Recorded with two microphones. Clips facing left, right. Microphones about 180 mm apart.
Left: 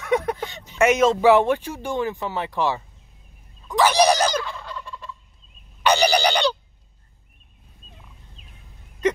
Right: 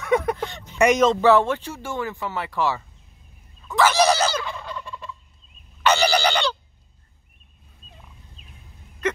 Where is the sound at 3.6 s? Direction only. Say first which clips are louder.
Left 1 dB; 15° left (ahead or behind).